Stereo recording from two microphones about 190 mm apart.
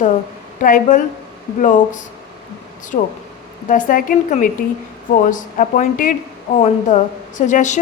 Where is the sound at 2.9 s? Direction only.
45° left (ahead or behind).